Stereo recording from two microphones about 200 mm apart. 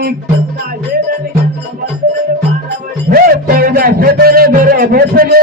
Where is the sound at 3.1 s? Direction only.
50° right (ahead or behind).